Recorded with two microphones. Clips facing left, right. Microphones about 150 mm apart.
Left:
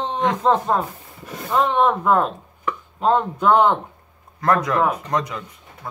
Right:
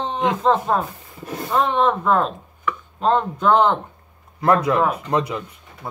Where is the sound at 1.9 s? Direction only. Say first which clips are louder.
Even; 5° left (ahead or behind).